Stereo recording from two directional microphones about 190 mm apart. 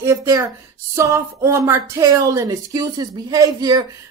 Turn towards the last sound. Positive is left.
turn(degrees=-20)  # may be behind; listen again after turning